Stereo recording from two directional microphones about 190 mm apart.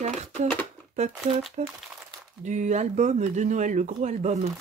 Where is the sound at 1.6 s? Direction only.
40° right (ahead or behind).